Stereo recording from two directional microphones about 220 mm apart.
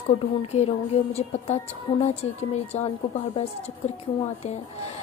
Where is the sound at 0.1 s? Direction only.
30° left (ahead or behind).